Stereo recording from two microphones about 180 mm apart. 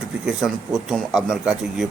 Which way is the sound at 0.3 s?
5° right (ahead or behind).